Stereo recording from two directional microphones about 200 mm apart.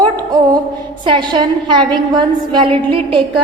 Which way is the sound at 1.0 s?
25° right (ahead or behind).